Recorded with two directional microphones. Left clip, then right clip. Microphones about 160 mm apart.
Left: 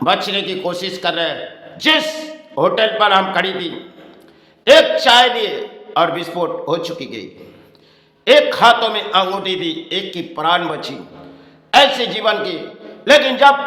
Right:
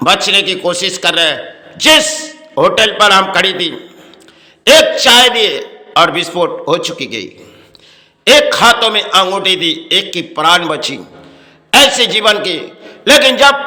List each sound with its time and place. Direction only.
0.0 s a man's voice: 20° right (ahead or behind)